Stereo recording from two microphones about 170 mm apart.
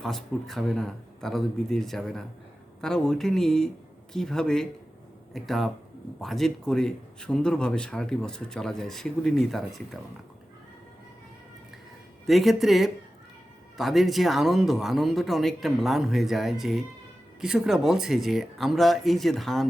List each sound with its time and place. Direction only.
0.0 s a man's voice: centre (ahead or behind)
12.2 s a man's voice: centre (ahead or behind)